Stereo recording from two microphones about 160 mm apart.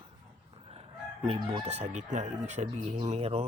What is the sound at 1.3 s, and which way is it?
Speech, 40° right (ahead or behind).